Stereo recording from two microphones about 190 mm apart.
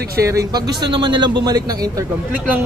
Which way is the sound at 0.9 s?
25° right (ahead or behind).